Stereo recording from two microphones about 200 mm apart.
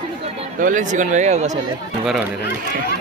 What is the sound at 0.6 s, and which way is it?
Speech, 40° right (ahead or behind).